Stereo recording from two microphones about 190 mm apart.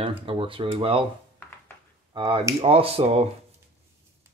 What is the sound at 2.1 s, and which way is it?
Speech, 25° right (ahead or behind).